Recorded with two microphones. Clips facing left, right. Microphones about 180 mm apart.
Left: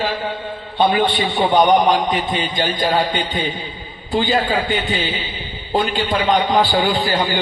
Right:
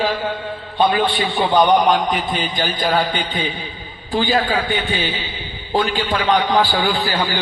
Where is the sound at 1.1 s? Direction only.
20° left (ahead or behind).